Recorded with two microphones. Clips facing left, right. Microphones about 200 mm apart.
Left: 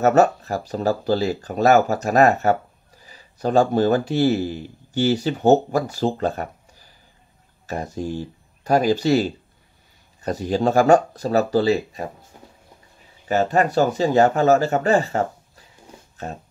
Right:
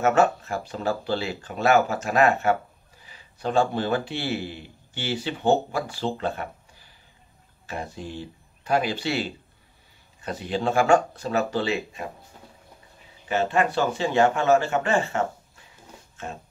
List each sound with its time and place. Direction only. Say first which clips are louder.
0.0 s a man's voice: left 4 dB; 40° left (ahead or behind)
13.3 s speech: left 4 dB; 40° left (ahead or behind)